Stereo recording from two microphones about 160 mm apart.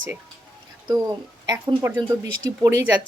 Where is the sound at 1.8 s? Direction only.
15° right (ahead or behind).